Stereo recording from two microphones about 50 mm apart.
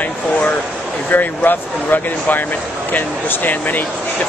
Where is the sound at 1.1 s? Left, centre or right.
Left.